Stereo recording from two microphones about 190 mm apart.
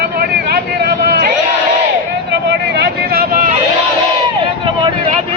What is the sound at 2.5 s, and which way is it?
Vehicle, 60° right (ahead or behind).